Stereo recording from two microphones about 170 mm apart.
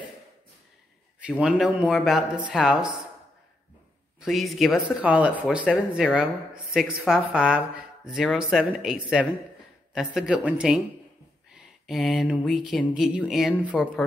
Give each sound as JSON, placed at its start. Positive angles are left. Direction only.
{"t": 1.2, "sound": "a man's voice", "side_deg": -5}
{"t": 4.2, "sound": "speech", "side_deg": 0}
{"t": 11.8, "sound": "a sound", "side_deg": 0}
{"t": 12.4, "sound": "speech", "side_deg": 0}